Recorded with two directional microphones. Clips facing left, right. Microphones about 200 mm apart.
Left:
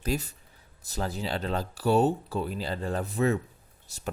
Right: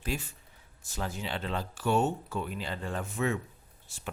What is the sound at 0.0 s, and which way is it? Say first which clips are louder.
Speech: left 5 dB; 40° left (ahead or behind).